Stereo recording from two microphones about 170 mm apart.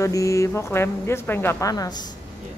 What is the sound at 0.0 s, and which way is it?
Speech, 20° left (ahead or behind).